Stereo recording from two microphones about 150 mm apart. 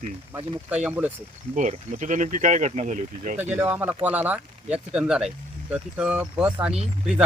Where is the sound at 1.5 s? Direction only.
55° right (ahead or behind).